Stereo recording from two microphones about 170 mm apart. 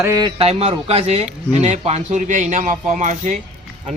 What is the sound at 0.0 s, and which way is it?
Speech, 20° right (ahead or behind).